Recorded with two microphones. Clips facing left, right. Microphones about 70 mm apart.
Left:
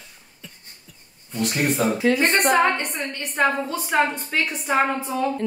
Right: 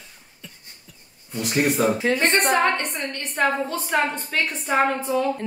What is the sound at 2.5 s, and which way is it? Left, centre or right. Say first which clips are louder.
Speech: left 1 dB; centre.